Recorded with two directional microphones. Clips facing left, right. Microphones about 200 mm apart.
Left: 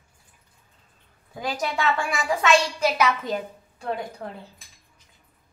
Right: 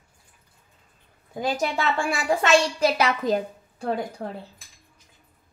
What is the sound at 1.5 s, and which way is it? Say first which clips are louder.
A child's voice: left 1 dB; 30° right (ahead or behind).